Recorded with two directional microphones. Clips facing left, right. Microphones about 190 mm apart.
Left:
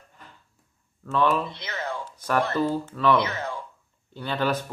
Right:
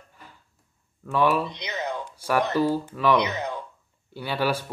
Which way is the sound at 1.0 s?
10° right (ahead or behind).